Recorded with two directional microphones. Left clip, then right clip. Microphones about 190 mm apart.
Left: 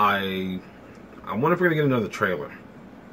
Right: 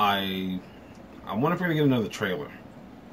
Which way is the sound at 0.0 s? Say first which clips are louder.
Left 3 dB; 10° left (ahead or behind).